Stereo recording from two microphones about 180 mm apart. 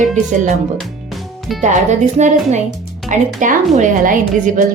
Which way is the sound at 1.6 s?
40° right (ahead or behind).